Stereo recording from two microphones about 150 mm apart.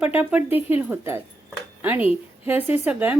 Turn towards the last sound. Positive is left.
turn(degrees=-15)  # may be behind; listen again after turning